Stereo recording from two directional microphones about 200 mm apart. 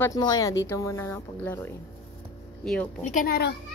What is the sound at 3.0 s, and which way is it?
Speech, 45° left (ahead or behind).